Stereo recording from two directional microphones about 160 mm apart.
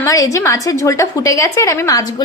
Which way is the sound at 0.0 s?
20° left (ahead or behind).